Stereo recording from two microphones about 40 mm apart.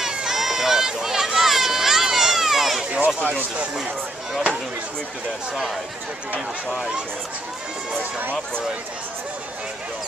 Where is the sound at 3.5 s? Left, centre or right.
Right.